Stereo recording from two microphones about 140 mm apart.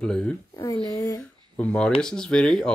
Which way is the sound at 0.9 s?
25° left (ahead or behind).